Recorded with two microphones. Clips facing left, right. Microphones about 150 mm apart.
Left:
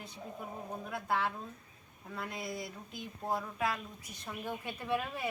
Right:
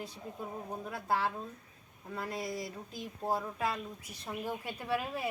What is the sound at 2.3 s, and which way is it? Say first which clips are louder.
Speech: right 4 dB; 35° right (ahead or behind).